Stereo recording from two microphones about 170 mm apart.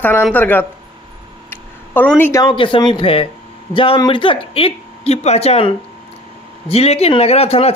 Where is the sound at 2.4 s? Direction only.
30° left (ahead or behind).